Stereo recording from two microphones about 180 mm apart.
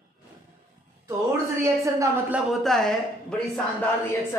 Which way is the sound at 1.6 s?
15° right (ahead or behind).